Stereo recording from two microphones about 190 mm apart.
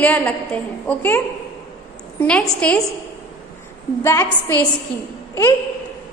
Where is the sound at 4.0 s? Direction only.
15° left (ahead or behind).